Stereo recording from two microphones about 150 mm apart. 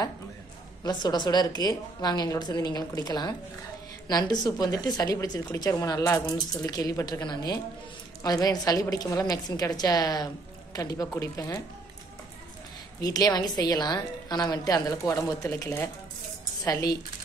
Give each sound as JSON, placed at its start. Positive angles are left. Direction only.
{"t": 0.8, "sound": "a woman's voice", "side_deg": 30}
{"t": 13.0, "sound": "a woman's voice", "side_deg": 25}